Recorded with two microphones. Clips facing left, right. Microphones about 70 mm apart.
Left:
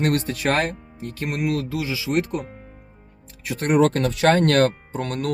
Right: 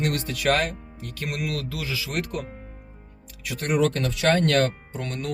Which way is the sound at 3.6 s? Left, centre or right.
Left.